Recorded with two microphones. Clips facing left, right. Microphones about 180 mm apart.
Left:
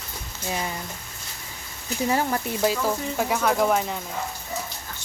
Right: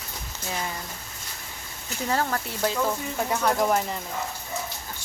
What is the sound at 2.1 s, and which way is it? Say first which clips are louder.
Speech: left 1 dB; 15° left (ahead or behind).